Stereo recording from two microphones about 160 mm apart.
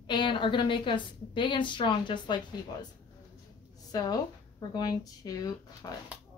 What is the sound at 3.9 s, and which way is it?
A woman's voice, 25° left (ahead or behind).